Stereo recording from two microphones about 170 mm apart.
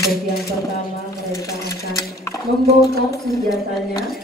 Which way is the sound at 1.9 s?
20° left (ahead or behind).